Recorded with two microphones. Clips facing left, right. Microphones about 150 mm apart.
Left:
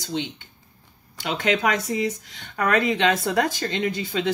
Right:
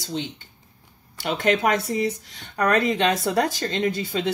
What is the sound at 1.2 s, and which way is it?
Speech, 50° right (ahead or behind).